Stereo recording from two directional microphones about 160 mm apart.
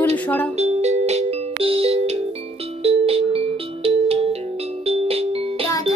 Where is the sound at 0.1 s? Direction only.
10° left (ahead or behind).